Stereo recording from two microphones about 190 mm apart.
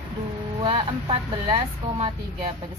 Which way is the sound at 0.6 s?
25° right (ahead or behind).